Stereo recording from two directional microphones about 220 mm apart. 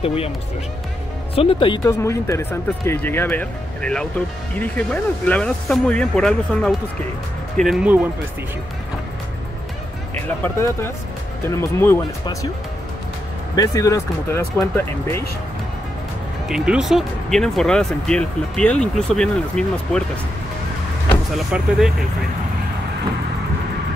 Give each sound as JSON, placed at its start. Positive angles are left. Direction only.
{"t": 0.0, "sound": "speech", "side_deg": 25}
{"t": 1.3, "sound": "speech", "side_deg": 25}
{"t": 10.4, "sound": "speech", "side_deg": 10}
{"t": 13.6, "sound": "speech", "side_deg": 15}
{"t": 16.4, "sound": "speech", "side_deg": -5}
{"t": 21.1, "sound": "speech", "side_deg": 0}